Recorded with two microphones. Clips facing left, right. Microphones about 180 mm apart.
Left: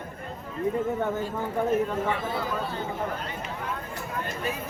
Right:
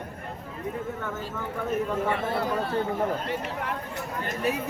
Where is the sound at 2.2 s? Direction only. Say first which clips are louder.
Right 3 dB; 65° right (ahead or behind).